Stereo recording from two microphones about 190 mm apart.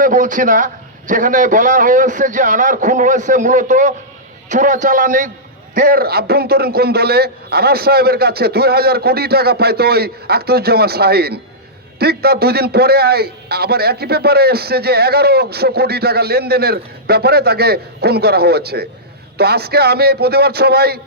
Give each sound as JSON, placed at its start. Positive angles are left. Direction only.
{"t": 0.0, "sound": "a man's voice", "side_deg": -45}